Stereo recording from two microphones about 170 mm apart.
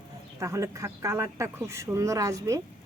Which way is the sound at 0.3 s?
20° right (ahead or behind).